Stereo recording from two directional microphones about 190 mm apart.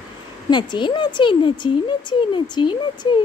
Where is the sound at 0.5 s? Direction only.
25° left (ahead or behind).